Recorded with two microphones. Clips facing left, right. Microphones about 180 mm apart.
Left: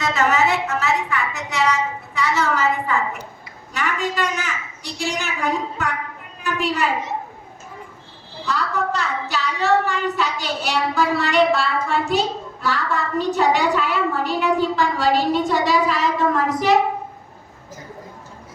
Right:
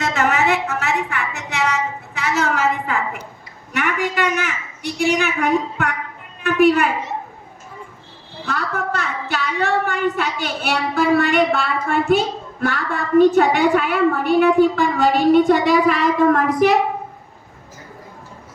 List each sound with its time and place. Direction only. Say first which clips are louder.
0.1 s a sound: even; 70° right (ahead or behind)
3.7 s a woman's voice: right 2 dB; 65° right (ahead or behind)
8.4 s a woman's voice: left 1 dB; 55° right (ahead or behind)